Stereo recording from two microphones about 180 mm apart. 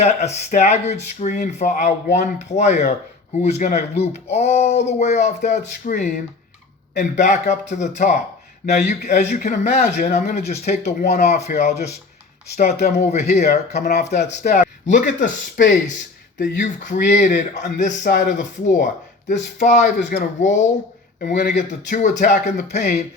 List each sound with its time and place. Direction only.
0.0 s speech: 35° left (ahead or behind)